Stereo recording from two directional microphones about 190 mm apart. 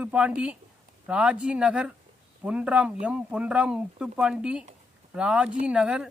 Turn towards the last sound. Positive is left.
turn(degrees=-5)  # may be behind; listen again after turning